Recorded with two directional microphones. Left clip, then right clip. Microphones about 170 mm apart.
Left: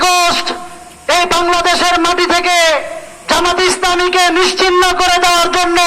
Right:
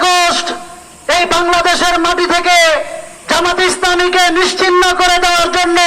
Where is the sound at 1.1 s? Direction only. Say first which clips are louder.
Even; 50° right (ahead or behind).